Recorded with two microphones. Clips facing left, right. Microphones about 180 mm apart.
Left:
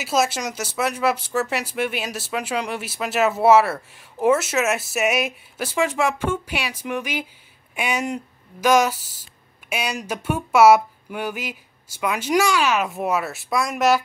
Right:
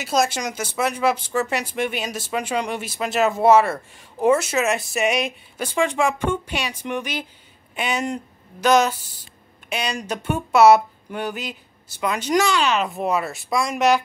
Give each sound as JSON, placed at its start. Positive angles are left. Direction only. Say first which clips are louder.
{"t": 0.0, "sound": "speech", "louder": "even", "side_deg": 5}